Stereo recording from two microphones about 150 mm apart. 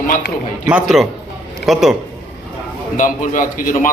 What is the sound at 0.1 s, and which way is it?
Speech, 60° left (ahead or behind).